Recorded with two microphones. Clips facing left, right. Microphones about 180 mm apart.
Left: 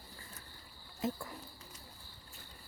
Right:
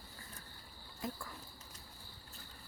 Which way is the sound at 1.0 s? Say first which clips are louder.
Left 6 dB; 25° left (ahead or behind).